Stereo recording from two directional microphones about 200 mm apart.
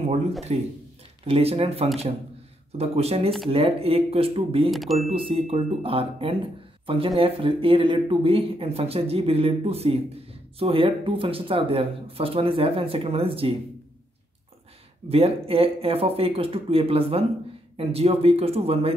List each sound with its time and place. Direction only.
0.5 s speech: 30° right (ahead or behind)
4.6 s speech: centre (ahead or behind)
5.1 s speech: 30° right (ahead or behind)
15.0 s speech: 30° right (ahead or behind)